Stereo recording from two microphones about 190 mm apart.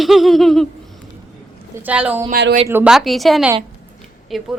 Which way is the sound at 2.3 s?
55° right (ahead or behind).